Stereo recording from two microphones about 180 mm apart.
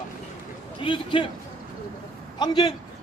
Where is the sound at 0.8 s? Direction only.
25° left (ahead or behind).